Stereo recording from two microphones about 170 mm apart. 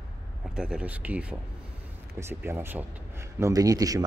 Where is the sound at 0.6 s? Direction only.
5° right (ahead or behind).